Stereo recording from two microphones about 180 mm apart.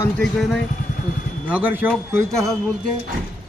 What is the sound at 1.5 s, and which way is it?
A man's voice, 10° right (ahead or behind).